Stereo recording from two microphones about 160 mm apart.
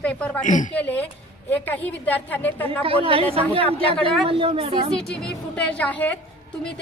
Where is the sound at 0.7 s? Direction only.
10° left (ahead or behind).